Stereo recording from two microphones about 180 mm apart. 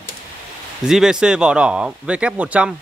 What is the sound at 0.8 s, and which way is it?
Speech, 5° right (ahead or behind).